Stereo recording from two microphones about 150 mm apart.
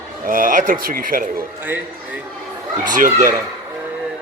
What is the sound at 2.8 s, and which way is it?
Speech, 60° right (ahead or behind).